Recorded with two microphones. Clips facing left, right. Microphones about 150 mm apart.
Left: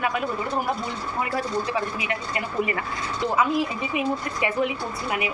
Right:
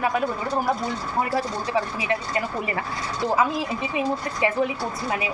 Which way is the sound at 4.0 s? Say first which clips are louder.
Right 1 dB; 30° right (ahead or behind).